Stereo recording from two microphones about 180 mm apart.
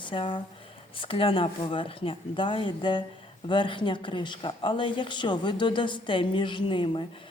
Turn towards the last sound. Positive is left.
turn(degrees=30)  # may be behind; listen again after turning